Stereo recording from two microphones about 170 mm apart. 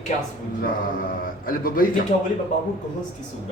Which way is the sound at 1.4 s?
60° left (ahead or behind).